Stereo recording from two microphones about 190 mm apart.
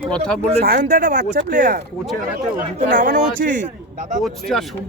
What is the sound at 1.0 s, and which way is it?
Speech, 45° right (ahead or behind).